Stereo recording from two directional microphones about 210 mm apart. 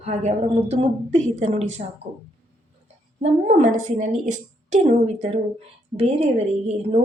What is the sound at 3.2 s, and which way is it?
A woman's voice, 35° right (ahead or behind).